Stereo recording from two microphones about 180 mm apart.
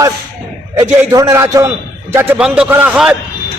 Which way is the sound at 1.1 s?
20° right (ahead or behind).